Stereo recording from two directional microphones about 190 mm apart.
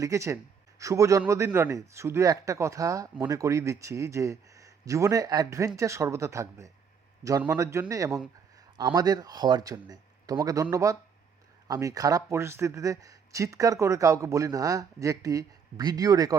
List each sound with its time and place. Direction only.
0.0 s speech: 15° right (ahead or behind)